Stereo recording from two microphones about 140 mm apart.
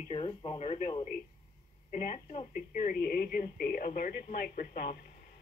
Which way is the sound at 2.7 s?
85° left.